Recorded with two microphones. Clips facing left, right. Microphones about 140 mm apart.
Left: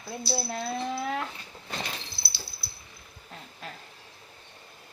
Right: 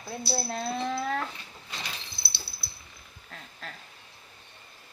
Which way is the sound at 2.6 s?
Centre (ahead or behind).